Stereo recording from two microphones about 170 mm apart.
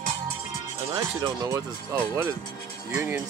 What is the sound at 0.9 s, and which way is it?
Speech, 20° right (ahead or behind).